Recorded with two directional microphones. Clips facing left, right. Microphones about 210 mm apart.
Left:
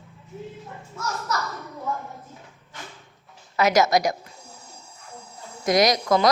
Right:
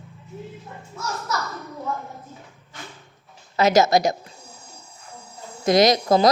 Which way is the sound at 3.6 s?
25° right (ahead or behind).